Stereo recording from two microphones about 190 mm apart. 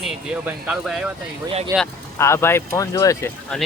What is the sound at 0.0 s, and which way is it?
Speech, 5° right (ahead or behind).